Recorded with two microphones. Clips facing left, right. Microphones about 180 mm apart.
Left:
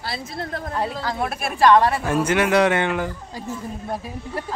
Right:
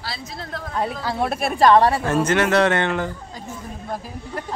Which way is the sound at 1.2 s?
30° right (ahead or behind).